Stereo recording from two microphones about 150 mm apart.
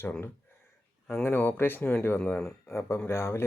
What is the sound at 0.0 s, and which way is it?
Speech, 15° left (ahead or behind).